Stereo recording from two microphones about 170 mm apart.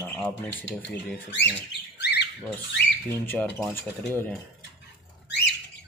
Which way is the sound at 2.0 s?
75° left (ahead or behind).